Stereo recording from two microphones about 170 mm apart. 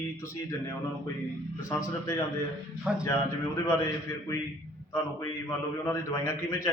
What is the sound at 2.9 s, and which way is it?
Speech, 5° right (ahead or behind).